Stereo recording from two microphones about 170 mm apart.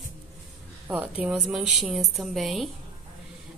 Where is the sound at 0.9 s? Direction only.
10° right (ahead or behind).